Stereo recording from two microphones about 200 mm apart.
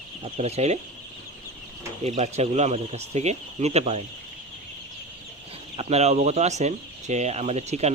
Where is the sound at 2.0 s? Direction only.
35° right (ahead or behind).